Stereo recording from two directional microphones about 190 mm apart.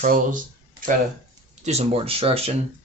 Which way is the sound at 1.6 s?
35° right (ahead or behind).